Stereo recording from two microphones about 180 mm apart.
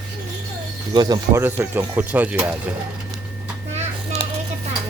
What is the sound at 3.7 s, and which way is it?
Children playing, 40° right (ahead or behind).